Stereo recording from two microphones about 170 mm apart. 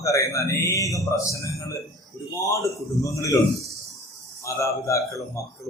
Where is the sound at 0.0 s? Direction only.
20° left (ahead or behind).